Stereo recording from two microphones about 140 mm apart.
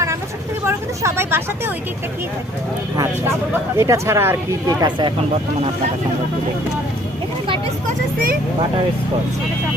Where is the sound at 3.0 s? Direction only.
20° right (ahead or behind).